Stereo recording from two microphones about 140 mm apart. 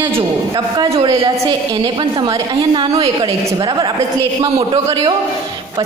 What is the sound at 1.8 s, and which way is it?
A woman's voice, 35° right (ahead or behind).